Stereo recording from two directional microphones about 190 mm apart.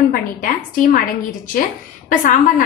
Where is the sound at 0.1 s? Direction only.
45° left (ahead or behind).